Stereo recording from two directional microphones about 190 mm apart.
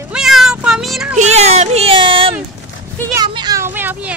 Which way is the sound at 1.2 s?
35° right (ahead or behind).